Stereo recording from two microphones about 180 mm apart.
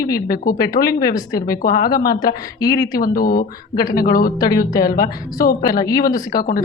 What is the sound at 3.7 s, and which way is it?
Speech, 20° left (ahead or behind).